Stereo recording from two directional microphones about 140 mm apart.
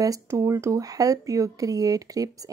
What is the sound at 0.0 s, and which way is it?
Speech, 25° right (ahead or behind).